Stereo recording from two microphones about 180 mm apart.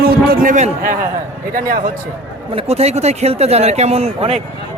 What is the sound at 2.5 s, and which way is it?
Speech, 35° right (ahead or behind).